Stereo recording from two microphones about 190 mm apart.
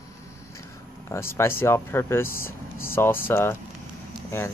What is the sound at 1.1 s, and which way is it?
Speech, 15° left (ahead or behind).